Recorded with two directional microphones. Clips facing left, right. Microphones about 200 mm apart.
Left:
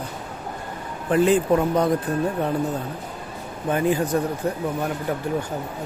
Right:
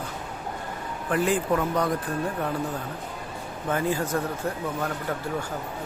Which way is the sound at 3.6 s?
15° left (ahead or behind).